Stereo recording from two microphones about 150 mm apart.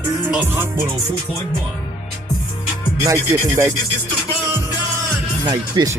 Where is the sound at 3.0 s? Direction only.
20° right (ahead or behind).